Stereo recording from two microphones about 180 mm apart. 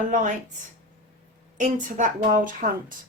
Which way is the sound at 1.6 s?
45° right (ahead or behind).